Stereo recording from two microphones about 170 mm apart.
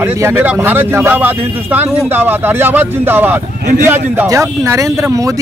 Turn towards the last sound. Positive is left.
turn(degrees=-20)  # may be behind; listen again after turning